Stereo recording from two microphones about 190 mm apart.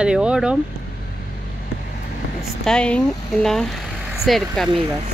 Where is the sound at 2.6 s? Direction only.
5° left (ahead or behind).